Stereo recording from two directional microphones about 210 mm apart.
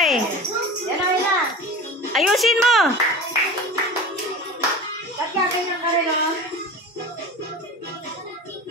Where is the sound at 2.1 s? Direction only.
Centre (ahead or behind).